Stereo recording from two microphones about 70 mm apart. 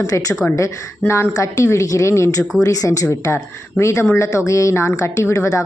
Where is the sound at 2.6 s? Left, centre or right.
Left.